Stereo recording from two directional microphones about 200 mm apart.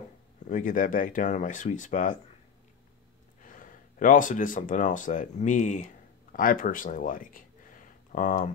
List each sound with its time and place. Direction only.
0.5 s speech: 40° left (ahead or behind)
3.4 s speech: 40° left (ahead or behind)